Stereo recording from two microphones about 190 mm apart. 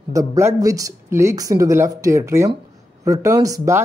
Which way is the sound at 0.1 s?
15° right (ahead or behind).